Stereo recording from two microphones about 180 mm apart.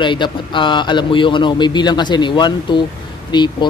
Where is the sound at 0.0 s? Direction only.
25° left (ahead or behind).